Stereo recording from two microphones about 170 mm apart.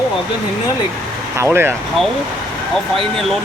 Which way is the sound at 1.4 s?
15° right (ahead or behind).